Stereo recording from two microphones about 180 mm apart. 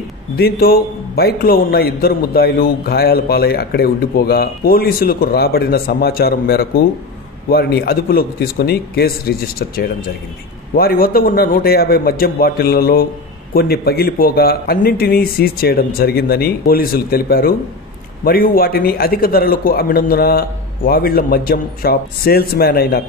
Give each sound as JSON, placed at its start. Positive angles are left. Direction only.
{"t": 0.4, "sound": "a man's voice", "side_deg": 55}
{"t": 10.7, "sound": "a man's voice", "side_deg": 55}